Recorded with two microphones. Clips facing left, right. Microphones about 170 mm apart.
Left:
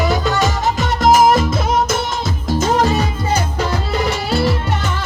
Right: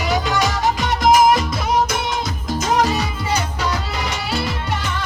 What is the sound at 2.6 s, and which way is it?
Music, 50° left (ahead or behind).